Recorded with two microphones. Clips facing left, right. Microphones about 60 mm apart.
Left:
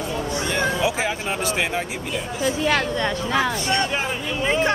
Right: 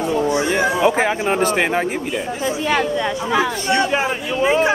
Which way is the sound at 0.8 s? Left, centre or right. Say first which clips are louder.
Right 7 dB; right.